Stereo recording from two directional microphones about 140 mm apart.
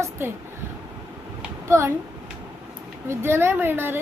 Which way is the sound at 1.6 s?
20° right (ahead or behind).